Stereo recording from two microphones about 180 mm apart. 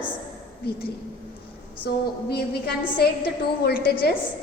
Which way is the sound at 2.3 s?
60° left (ahead or behind).